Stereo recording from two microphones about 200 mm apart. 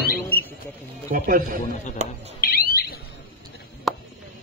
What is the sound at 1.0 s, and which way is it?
Speech, 45° right (ahead or behind).